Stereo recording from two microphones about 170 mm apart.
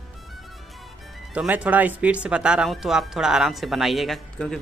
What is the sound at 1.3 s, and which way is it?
Speech, 10° right (ahead or behind).